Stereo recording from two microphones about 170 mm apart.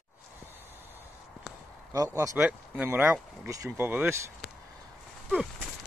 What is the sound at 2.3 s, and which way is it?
Speech, 10° right (ahead or behind).